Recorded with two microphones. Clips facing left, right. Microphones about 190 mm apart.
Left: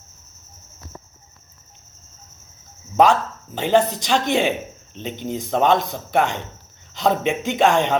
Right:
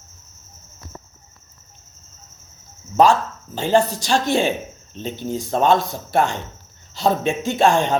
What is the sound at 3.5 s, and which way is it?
Speech, 20° left (ahead or behind).